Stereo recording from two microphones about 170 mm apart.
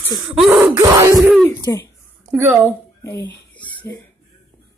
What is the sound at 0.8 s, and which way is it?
Speech, 20° right (ahead or behind).